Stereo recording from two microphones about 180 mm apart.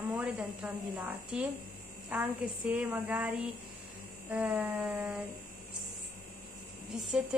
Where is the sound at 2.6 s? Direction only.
Centre (ahead or behind).